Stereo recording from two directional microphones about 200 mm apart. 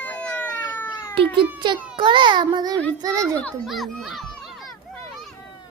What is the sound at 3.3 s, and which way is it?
A child's voice, 5° left (ahead or behind).